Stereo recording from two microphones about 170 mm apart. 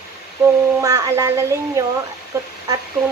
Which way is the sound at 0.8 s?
20° right (ahead or behind).